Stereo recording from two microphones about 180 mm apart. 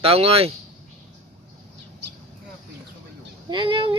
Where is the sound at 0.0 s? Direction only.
35° right (ahead or behind).